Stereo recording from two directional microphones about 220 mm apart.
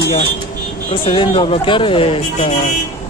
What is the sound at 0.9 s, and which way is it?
Speech, 25° left (ahead or behind).